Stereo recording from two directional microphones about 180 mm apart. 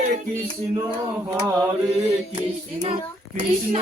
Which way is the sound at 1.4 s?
15° right (ahead or behind).